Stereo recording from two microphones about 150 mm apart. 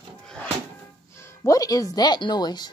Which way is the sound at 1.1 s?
20° left (ahead or behind).